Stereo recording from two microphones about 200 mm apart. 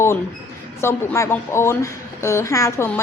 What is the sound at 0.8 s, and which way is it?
A woman's voice, 15° left (ahead or behind).